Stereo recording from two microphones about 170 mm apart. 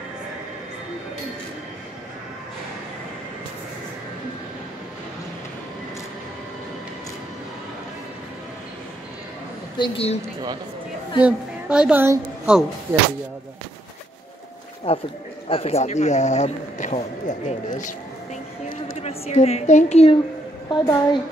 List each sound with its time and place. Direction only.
9.8 s a woman's voice: 35° left (ahead or behind)
11.2 s a woman's voice: 5° right (ahead or behind)
14.9 s a woman's voice: 35° left (ahead or behind)
18.9 s a woman's voice: 40° left (ahead or behind)
20.7 s a woman's voice: 25° left (ahead or behind)